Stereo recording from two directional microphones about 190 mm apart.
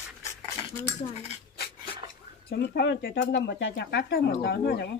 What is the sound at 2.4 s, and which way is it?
Speech, 60° left (ahead or behind).